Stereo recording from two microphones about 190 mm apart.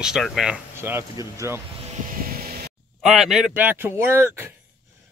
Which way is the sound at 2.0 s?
45° right (ahead or behind).